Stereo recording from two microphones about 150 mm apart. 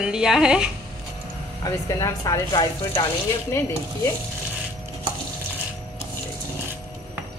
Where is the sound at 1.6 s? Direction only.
25° left (ahead or behind).